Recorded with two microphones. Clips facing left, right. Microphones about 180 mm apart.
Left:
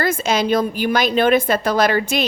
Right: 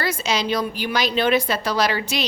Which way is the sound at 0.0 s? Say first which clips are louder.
Left 5 dB; 50° left (ahead or behind).